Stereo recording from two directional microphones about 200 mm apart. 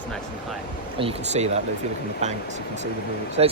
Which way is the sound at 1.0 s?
30° right (ahead or behind).